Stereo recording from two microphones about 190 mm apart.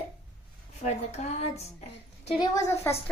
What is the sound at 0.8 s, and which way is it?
Speech, 35° left (ahead or behind).